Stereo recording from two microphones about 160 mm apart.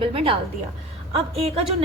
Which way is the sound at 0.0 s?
35° right (ahead or behind).